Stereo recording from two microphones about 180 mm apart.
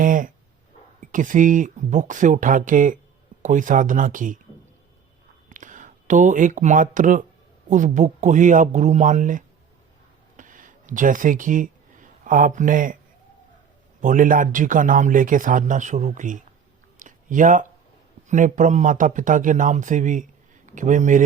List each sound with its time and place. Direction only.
0.0 s speech: 45° right (ahead or behind)
5.5 s speech: 45° right (ahead or behind)
10.3 s a sound: 45° right (ahead or behind)
14.0 s speech: 45° right (ahead or behind)
17.0 s a sound: 45° right (ahead or behind)
18.3 s speech: 45° right (ahead or behind)